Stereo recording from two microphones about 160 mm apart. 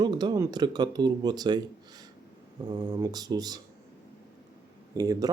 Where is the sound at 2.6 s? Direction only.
25° right (ahead or behind).